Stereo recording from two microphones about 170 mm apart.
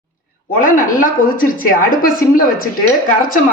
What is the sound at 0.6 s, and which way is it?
A woman's voice, 50° left (ahead or behind).